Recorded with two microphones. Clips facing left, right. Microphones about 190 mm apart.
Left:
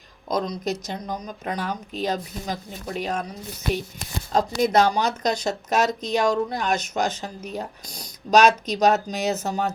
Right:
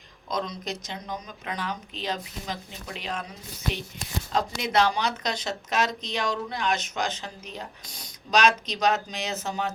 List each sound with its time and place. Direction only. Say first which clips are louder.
0.3 s speech: left 6 dB; 45° left (ahead or behind)
4.3 s speech: left 7 dB; 45° left (ahead or behind)